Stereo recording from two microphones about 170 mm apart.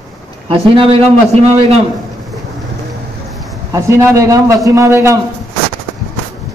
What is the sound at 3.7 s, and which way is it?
A man's voice, 15° right (ahead or behind).